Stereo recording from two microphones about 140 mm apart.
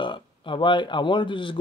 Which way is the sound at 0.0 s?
35° left (ahead or behind).